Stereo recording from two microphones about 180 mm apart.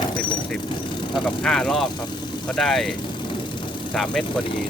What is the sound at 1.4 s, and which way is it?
Speech, 5° left (ahead or behind).